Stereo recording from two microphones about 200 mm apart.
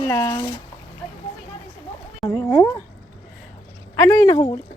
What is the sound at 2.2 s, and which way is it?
Speech, 20° left (ahead or behind).